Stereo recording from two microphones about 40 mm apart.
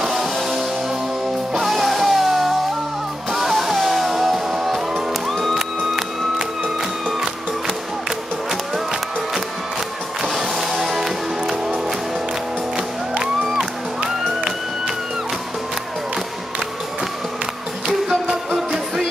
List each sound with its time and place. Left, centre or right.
0.0 s music: centre
1.5 s music: centre
7.1 s music: centre
10.2 s music: centre
13.2 s music: centre
18.0 s music: centre